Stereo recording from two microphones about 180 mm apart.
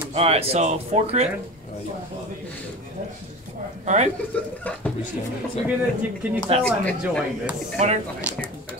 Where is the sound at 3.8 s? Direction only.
40° right (ahead or behind).